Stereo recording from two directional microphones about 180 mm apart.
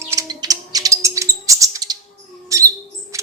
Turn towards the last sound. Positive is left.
turn(degrees=-15)  # may be behind; listen again after turning